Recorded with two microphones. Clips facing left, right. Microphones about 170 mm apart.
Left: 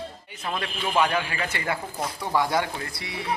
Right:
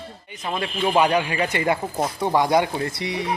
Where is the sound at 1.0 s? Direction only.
15° right (ahead or behind).